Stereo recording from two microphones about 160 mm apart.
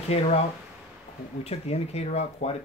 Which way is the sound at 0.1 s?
40° left (ahead or behind).